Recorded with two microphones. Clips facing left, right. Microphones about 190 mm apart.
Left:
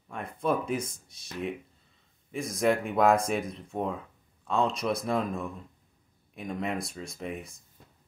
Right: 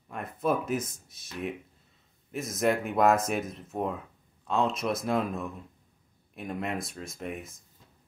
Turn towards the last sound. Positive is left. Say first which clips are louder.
# even
turn(degrees=0)  # may be behind; listen again after turning